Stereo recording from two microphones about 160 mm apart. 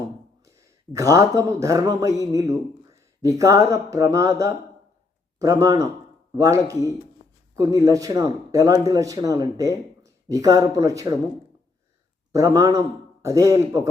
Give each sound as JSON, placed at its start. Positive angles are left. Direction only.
{"t": 0.4, "sound": "speech", "side_deg": -20}
{"t": 12.3, "sound": "speech", "side_deg": -20}